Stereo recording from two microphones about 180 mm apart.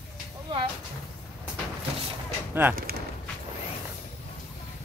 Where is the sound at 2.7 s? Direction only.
55° right (ahead or behind).